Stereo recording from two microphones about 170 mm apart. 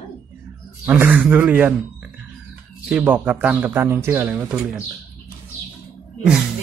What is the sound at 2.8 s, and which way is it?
Speech, 5° right (ahead or behind).